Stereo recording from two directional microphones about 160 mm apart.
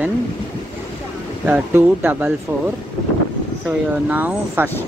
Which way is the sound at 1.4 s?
10° right (ahead or behind).